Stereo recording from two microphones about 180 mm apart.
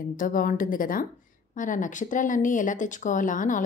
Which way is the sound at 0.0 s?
50° left (ahead or behind).